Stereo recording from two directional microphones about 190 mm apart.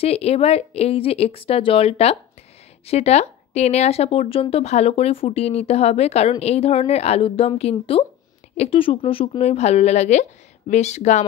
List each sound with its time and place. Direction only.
0.0 s speech: 35° left (ahead or behind)